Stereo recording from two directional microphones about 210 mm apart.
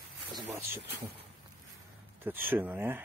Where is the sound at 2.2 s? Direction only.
10° right (ahead or behind).